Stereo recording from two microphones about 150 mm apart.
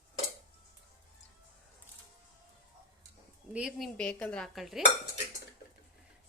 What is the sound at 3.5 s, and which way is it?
Speech, 5° right (ahead or behind).